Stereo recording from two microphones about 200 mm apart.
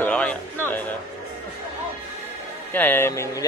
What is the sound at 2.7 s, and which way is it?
Speech, 10° left (ahead or behind).